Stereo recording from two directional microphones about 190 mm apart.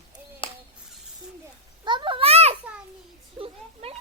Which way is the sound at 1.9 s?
25° right (ahead or behind).